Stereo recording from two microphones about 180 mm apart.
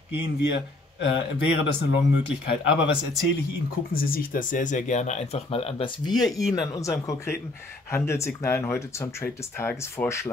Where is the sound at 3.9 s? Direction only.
55° left (ahead or behind); by 6.3 s 20° left (ahead or behind).